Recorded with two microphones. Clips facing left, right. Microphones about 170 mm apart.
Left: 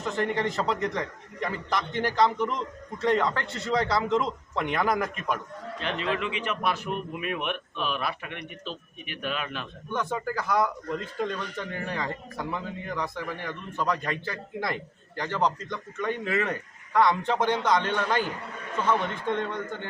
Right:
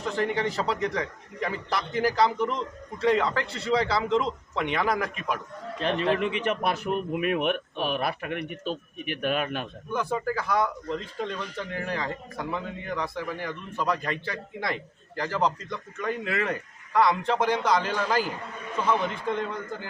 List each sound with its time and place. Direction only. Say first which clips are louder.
0.0 s speech: right 1 dB; centre (ahead or behind)
5.8 s a man's voice: right 5 dB; 35° right (ahead or behind)
9.9 s speech: right 2 dB; centre (ahead or behind)